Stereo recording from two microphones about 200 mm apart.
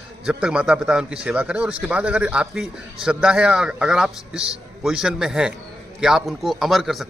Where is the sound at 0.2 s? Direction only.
5° right (ahead or behind).